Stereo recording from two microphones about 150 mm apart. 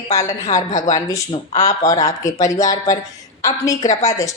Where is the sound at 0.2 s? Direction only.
50° left (ahead or behind).